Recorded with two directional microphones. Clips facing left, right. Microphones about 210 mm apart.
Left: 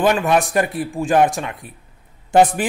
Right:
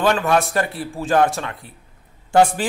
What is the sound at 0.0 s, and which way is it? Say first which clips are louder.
A man's voice: left 2 dB; 15° left (ahead or behind).